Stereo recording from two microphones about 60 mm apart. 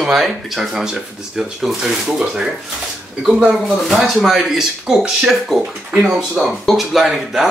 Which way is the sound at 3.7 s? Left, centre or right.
Centre.